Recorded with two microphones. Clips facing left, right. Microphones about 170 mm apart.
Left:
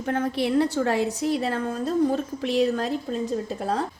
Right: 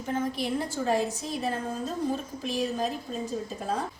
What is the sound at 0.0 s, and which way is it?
A woman's voice, 65° left (ahead or behind).